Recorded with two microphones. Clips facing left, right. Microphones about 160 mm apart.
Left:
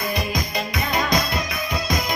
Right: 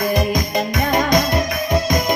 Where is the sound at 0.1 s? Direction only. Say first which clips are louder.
Right 7 dB; 50° right (ahead or behind).